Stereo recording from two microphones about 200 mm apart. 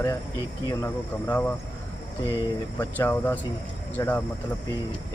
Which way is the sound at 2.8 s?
10° left (ahead or behind).